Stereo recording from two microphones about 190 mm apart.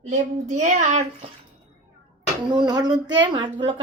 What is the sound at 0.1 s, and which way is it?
Speech, 40° right (ahead or behind).